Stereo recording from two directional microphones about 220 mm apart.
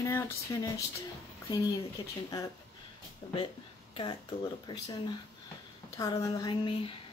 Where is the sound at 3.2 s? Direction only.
15° left (ahead or behind).